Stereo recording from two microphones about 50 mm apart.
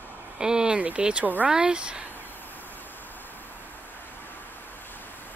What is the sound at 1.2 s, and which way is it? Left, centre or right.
Speech, right.